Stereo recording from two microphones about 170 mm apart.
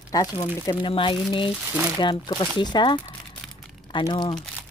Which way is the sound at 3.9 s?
25° left (ahead or behind).